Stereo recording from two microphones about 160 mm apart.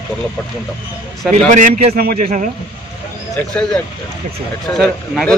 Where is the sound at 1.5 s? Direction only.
50° right (ahead or behind).